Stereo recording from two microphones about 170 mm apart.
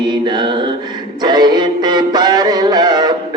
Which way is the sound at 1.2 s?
25° right (ahead or behind).